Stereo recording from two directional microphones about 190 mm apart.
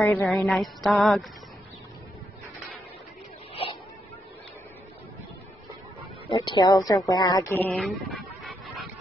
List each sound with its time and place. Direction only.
0.0 s speech: centre (ahead or behind)
6.2 s speech: 25° left (ahead or behind)
7.1 s a sound: 20° left (ahead or behind); by 8.8 s centre (ahead or behind)